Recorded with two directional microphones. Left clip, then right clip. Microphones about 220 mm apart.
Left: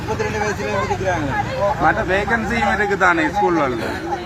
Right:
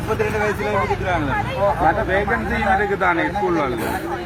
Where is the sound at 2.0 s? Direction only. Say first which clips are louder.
Left 1 dB; 45° left (ahead or behind).